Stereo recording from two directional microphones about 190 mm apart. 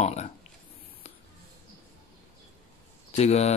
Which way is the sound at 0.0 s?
35° left (ahead or behind).